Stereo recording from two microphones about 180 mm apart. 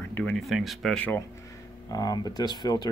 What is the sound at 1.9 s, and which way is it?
Speech, 20° left (ahead or behind).